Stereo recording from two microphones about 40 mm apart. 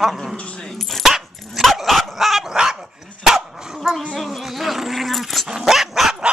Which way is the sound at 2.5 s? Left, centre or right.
Centre.